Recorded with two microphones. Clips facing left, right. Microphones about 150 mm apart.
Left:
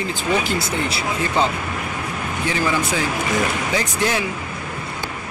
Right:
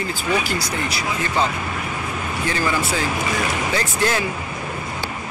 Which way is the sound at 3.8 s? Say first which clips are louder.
Even; 15° left (ahead or behind).